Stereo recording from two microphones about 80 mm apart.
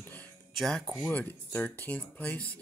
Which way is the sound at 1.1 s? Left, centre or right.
Left.